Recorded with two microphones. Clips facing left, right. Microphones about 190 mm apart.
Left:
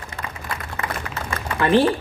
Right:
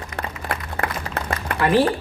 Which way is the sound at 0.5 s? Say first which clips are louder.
Right 3 dB; 60° right (ahead or behind).